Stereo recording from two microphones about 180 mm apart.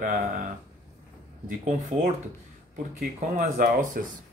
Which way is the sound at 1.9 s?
35° right (ahead or behind).